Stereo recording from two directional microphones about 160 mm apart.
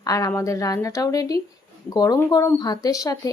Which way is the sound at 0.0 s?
20° left (ahead or behind).